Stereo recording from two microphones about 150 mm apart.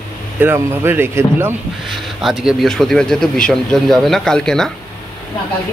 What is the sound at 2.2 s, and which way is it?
Speech, centre (ahead or behind).